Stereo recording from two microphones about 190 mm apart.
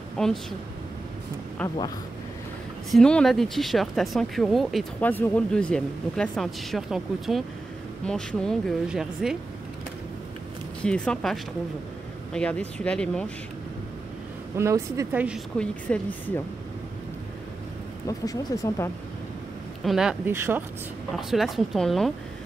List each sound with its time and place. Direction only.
0.2 s speech: 5° left (ahead or behind)
1.6 s speech: 5° left (ahead or behind)
2.9 s speech: 5° left (ahead or behind)
10.8 s speech: 5° left (ahead or behind)
14.6 s speech: 15° right (ahead or behind)
15.2 s speech: centre (ahead or behind)
18.0 s speech: 20° left (ahead or behind)
19.8 s speech: centre (ahead or behind)